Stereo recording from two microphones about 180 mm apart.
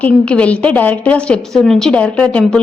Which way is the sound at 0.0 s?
5° left (ahead or behind).